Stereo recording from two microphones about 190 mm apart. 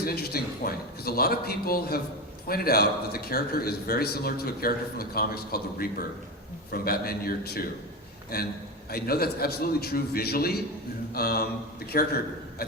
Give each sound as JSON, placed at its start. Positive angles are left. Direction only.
{"t": 0.0, "sound": "a man's voice", "side_deg": 55}
{"t": 8.9, "sound": "a man's voice", "side_deg": 55}